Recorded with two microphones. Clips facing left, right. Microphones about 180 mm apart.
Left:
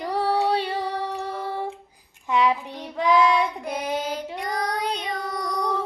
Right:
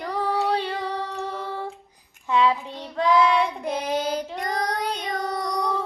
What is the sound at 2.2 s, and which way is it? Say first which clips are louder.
Child singing: right 1 dB; 15° left (ahead or behind).